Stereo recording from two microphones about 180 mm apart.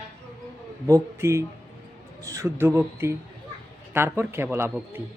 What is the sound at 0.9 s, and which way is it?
Speech, 15° right (ahead or behind).